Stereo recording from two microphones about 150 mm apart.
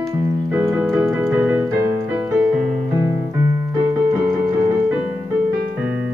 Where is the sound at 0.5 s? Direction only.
15° right (ahead or behind).